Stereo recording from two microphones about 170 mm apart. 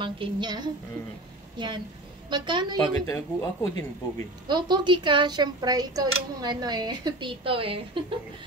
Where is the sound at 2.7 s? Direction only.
20° left (ahead or behind).